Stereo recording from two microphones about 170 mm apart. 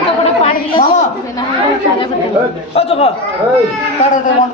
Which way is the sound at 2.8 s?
35° left (ahead or behind).